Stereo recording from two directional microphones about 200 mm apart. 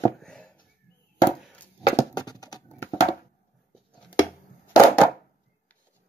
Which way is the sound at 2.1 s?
20° left (ahead or behind).